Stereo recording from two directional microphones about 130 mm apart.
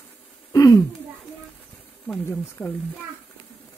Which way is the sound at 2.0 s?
15° left (ahead or behind).